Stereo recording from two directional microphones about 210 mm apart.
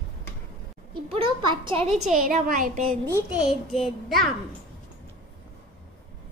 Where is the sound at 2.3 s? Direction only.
40° right (ahead or behind).